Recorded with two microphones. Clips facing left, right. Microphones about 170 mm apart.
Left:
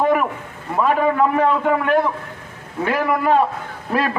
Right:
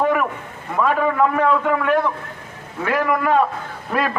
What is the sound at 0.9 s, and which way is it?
A man's voice, 30° left (ahead or behind).